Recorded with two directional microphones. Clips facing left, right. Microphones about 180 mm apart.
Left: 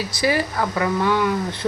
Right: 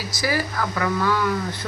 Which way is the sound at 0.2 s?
25° left (ahead or behind).